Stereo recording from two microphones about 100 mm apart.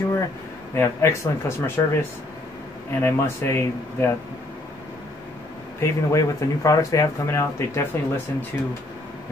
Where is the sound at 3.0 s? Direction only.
25° left (ahead or behind).